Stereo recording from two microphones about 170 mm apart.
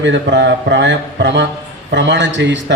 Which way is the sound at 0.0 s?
90° right.